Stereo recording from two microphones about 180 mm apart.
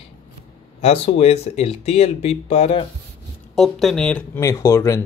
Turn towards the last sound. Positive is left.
turn(degrees=15)  # may be behind; listen again after turning